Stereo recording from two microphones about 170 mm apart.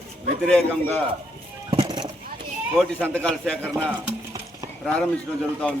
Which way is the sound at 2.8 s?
5° left (ahead or behind).